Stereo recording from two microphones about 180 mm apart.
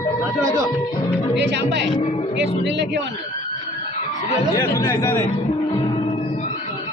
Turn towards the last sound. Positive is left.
turn(degrees=15)  # may be behind; listen again after turning